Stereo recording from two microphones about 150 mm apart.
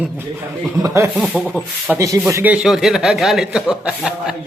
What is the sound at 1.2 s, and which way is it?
Speech, centre (ahead or behind).